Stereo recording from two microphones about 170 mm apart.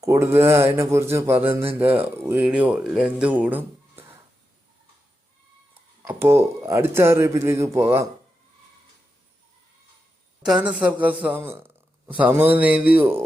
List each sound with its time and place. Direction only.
0.0 s speech: 15° right (ahead or behind)
6.1 s speech: 15° right (ahead or behind)
10.4 s a man's voice: 5° right (ahead or behind)